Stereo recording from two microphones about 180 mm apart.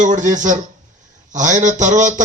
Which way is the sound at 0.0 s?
45° right (ahead or behind).